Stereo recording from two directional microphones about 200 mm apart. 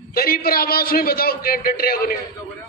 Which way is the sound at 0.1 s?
50° left (ahead or behind).